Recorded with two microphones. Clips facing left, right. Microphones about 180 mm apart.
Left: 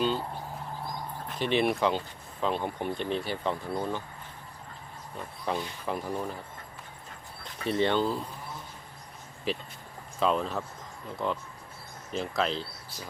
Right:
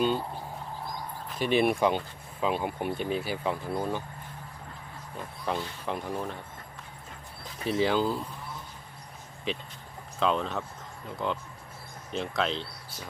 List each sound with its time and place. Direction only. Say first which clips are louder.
1.4 s speech: right 2 dB; 10° right (ahead or behind)
5.1 s speech: even; centre (ahead or behind)
7.6 s speech: even; centre (ahead or behind)
9.5 s speech: left 1 dB; 5° left (ahead or behind)
12.1 s speech: even; centre (ahead or behind)